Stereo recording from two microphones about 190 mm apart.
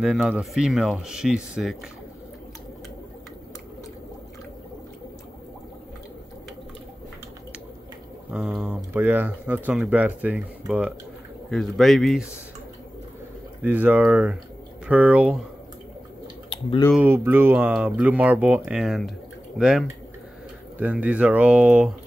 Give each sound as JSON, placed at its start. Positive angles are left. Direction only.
{"t": 0.0, "sound": "speech", "side_deg": -5}
{"t": 8.3, "sound": "speech", "side_deg": -5}
{"t": 11.5, "sound": "speech", "side_deg": 0}
{"t": 13.6, "sound": "speech", "side_deg": -10}
{"t": 16.4, "sound": "speech", "side_deg": 25}
{"t": 16.9, "sound": "speech", "side_deg": -10}
{"t": 20.7, "sound": "speech", "side_deg": -5}